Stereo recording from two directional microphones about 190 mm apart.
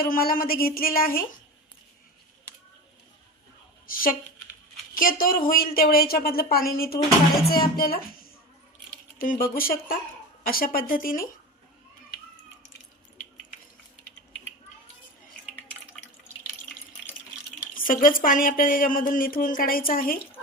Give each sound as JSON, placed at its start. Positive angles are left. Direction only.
{"t": 0.0, "sound": "speech", "side_deg": 50}
{"t": 3.8, "sound": "speech", "side_deg": 50}
{"t": 17.7, "sound": "a sound", "side_deg": 45}
{"t": 18.2, "sound": "speech", "side_deg": 45}